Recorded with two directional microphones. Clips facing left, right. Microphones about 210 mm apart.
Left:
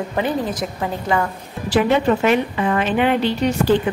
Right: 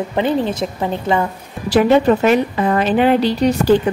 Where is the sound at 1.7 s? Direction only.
40° right (ahead or behind).